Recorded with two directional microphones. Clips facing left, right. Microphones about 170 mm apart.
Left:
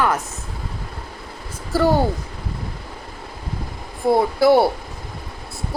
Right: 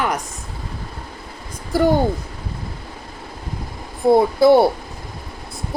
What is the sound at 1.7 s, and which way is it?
Speech, 15° right (ahead or behind).